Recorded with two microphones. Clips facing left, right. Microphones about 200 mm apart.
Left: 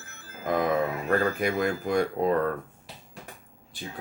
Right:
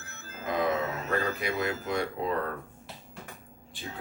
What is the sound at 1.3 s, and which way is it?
Speech, 50° left (ahead or behind).